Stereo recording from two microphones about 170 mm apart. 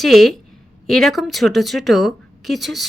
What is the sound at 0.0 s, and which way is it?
Speech, centre (ahead or behind).